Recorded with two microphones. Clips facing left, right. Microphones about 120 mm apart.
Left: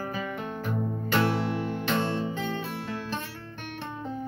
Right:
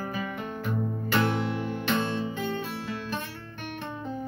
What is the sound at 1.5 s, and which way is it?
Music, 35° left (ahead or behind).